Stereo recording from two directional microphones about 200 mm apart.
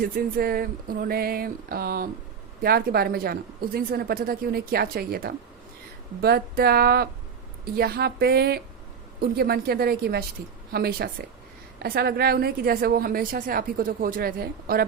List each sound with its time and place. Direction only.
0.0 s a woman's voice: 50° right (ahead or behind)